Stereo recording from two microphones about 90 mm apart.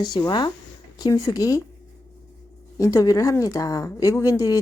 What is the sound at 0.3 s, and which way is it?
A woman's voice, 50° left (ahead or behind).